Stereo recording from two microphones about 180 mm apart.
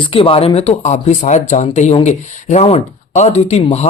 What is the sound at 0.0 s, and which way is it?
Speech, 30° left (ahead or behind).